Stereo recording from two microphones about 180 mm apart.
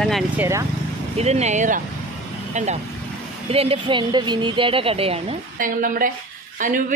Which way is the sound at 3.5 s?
30° right (ahead or behind).